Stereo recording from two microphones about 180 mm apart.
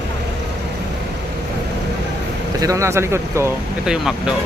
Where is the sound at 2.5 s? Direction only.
20° right (ahead or behind).